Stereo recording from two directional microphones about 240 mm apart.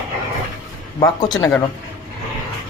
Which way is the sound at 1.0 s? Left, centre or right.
Centre.